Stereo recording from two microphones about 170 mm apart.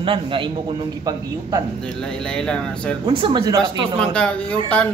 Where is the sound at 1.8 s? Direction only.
5° left (ahead or behind).